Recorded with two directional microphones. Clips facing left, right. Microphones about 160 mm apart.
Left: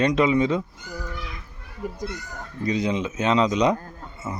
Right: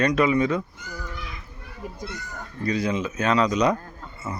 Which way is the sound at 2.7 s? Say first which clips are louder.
Left 1 dB; 20° left (ahead or behind).